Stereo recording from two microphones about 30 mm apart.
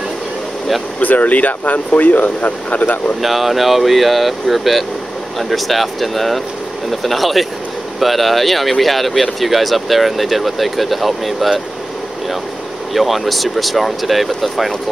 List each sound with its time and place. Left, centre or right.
1.0 s speech: left
3.2 s speech: centre
12.9 s speech: centre